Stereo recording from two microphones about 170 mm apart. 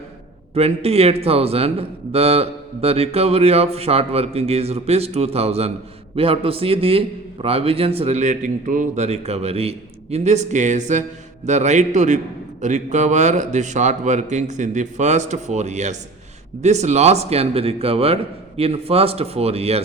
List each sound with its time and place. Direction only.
0.5 s speech: 35° right (ahead or behind)